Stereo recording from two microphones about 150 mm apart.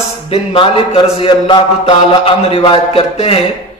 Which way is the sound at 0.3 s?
40° left (ahead or behind).